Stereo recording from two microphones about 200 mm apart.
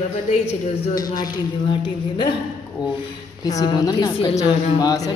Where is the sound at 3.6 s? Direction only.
20° left (ahead or behind).